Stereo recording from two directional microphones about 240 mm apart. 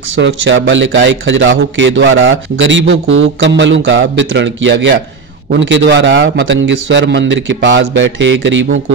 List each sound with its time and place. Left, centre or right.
0.1 s a man's voice: right